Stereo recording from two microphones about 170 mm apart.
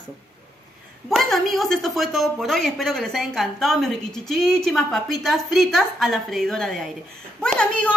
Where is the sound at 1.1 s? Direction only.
Centre (ahead or behind).